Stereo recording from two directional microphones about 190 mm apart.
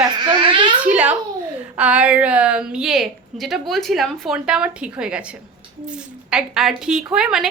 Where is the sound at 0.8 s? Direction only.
5° right (ahead or behind).